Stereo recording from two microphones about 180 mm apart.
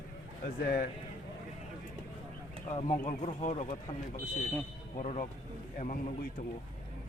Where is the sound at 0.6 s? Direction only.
50° left (ahead or behind).